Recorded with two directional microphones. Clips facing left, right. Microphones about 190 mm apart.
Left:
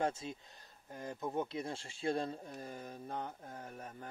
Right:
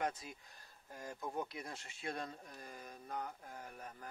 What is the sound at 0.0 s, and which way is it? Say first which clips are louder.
Speech: left 4 dB; 25° left (ahead or behind).